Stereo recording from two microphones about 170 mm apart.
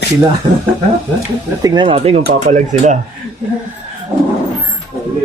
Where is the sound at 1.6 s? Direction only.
30° right (ahead or behind); by 3.0 s 45° right (ahead or behind).